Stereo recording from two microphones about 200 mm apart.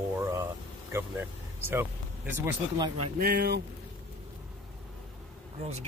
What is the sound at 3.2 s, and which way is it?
Speech, 50° right (ahead or behind).